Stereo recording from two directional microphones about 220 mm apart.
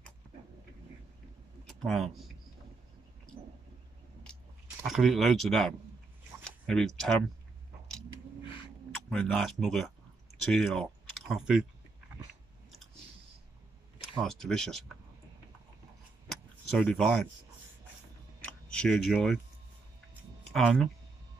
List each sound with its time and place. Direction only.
1.7 s a sound: centre (ahead or behind)
4.8 s speech: centre (ahead or behind)
9.1 s speech: centre (ahead or behind)
14.2 s speech: centre (ahead or behind)
16.7 s speech: 5° left (ahead or behind)
18.7 s speech: 5° left (ahead or behind)
20.5 s speech: centre (ahead or behind)